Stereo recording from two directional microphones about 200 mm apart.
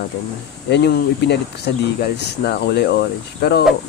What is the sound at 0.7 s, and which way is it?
Speech, 55° left (ahead or behind).